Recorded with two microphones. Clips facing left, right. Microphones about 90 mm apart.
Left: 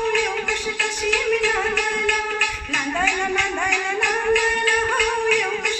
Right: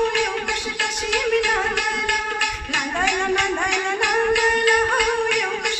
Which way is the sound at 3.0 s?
60° right (ahead or behind).